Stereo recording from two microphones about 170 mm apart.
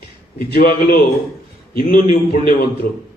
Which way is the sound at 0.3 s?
65° left (ahead or behind).